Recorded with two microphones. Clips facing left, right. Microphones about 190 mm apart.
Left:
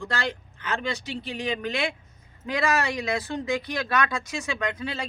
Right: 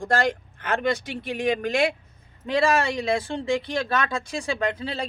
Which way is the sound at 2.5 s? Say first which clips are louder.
Right 4 dB; 30° right (ahead or behind).